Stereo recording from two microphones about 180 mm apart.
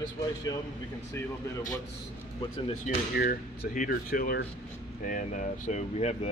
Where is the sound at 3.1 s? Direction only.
55° left (ahead or behind).